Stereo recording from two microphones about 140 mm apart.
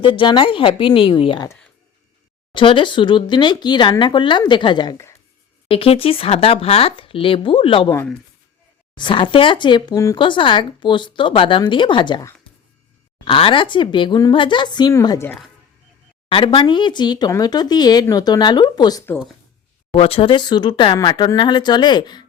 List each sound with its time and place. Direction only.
0.0 s speech: 35° left (ahead or behind)
2.5 s speech: 35° left (ahead or behind)
9.0 s speech: 35° left (ahead or behind)
10.2 s speech: 35° left (ahead or behind)
13.2 s speech: 40° left (ahead or behind); by 15.3 s 25° left (ahead or behind)
16.3 s speech: 40° left (ahead or behind)
19.9 s speech: 40° left (ahead or behind)